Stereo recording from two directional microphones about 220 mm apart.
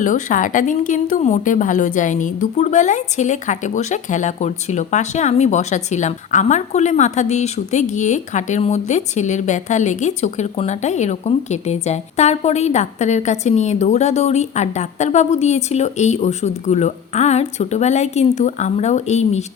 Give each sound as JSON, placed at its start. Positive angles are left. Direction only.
{"t": 0.0, "sound": "a woman's voice", "side_deg": 35}